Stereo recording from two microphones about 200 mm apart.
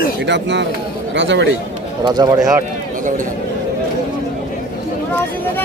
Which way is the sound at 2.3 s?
5° right (ahead or behind).